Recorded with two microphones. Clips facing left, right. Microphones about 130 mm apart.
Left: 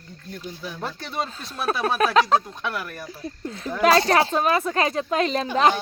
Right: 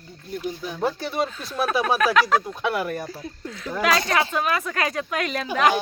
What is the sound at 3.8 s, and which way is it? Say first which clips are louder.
Speech: left 4 dB; 35° left (ahead or behind).